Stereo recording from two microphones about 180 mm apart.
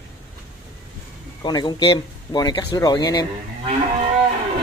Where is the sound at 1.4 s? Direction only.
25° left (ahead or behind).